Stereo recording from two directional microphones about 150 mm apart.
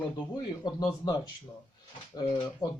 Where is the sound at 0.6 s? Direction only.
25° left (ahead or behind).